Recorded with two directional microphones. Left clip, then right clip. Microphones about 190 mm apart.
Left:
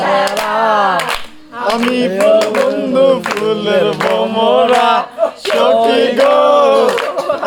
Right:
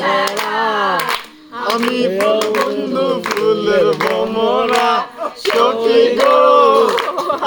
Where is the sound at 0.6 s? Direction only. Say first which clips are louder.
Left 5 dB; 20° left (ahead or behind).